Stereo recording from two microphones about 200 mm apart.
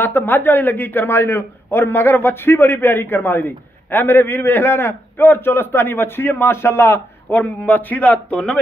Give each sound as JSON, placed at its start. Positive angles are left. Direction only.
{"t": 0.0, "sound": "a man's voice", "side_deg": 10}